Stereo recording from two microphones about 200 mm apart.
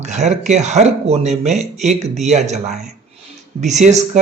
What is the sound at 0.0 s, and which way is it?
Speech, 35° right (ahead or behind).